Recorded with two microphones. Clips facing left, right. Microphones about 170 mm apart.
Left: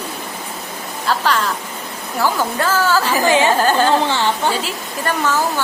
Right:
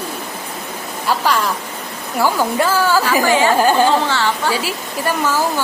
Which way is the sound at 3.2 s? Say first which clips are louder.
Left 2 dB; 20° left (ahead or behind).